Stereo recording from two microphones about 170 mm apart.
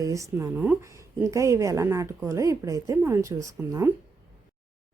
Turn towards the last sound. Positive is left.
turn(degrees=-15)  # may be behind; listen again after turning